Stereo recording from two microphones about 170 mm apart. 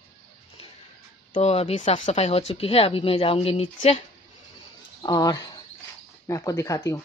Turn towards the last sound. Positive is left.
turn(degrees=20)  # may be behind; listen again after turning